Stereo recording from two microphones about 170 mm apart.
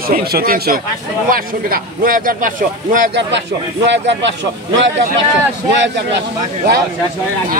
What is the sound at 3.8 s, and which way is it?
Speech, 90° right.